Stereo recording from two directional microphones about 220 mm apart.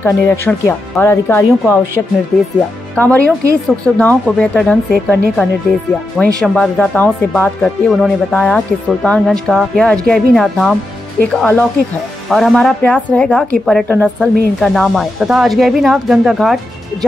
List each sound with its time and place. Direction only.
0.0 s speech: 10° left (ahead or behind)
3.0 s speech: 5° left (ahead or behind)
13.8 s a woman's voice: 10° right (ahead or behind)
14.2 s speech: centre (ahead or behind)